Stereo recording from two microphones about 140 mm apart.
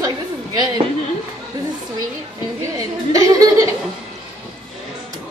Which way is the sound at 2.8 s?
25° right (ahead or behind).